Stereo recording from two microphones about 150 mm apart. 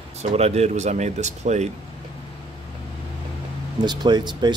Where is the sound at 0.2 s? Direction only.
45° right (ahead or behind).